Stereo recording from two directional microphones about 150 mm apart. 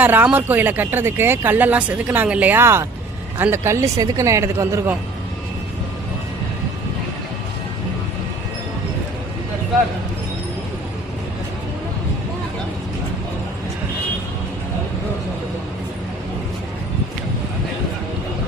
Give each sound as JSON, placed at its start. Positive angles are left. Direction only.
{"t": 0.0, "sound": "speech", "side_deg": -10}